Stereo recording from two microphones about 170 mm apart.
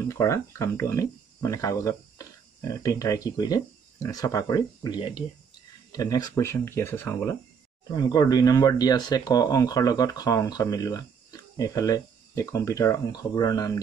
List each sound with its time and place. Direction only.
0.0 s speech: 15° left (ahead or behind)
7.9 s speech: 25° left (ahead or behind)